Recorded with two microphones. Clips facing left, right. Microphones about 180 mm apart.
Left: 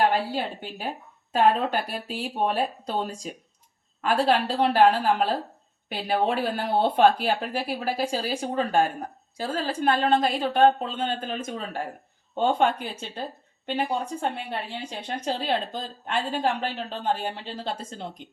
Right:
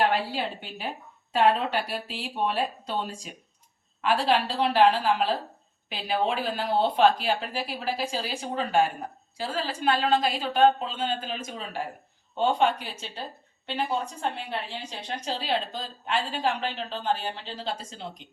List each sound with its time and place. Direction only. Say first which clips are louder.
0.3 s a woman's voice: left 2 dB; 45° left (ahead or behind)